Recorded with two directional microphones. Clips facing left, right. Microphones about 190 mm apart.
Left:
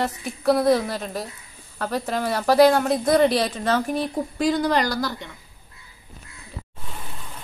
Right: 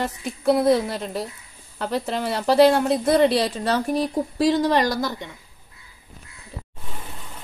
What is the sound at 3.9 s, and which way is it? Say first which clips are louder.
Speech: right 2 dB; 40° right (ahead or behind).